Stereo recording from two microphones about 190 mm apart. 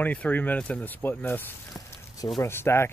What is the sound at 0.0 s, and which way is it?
Speech, 10° left (ahead or behind).